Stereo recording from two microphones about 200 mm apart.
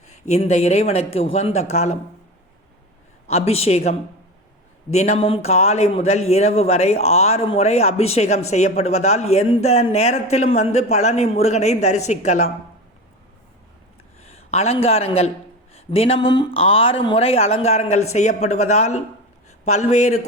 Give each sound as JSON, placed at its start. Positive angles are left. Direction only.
{"t": 0.1, "sound": "speech", "side_deg": 35}
{"t": 3.2, "sound": "speech", "side_deg": 30}
{"t": 14.3, "sound": "speech", "side_deg": 30}